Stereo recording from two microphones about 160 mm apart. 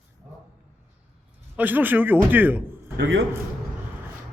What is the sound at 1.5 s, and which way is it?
A man's voice, 10° right (ahead or behind).